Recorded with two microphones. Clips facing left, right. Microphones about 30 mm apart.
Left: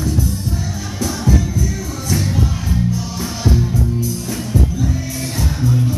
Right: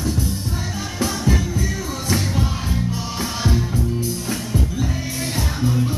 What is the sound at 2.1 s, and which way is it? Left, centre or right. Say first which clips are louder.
Music: left 3 dB; centre.